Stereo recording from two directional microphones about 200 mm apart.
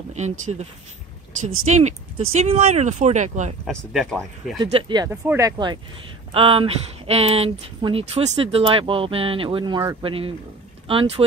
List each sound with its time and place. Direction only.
0.1 s speech: 35° right (ahead or behind)
1.7 s speech: 35° right (ahead or behind)
3.6 s speech: centre (ahead or behind)
4.6 s speech: 25° right (ahead or behind)